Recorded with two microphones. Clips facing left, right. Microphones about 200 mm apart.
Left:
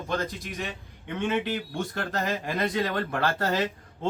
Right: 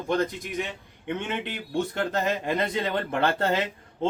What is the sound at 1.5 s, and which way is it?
Speech, 20° right (ahead or behind).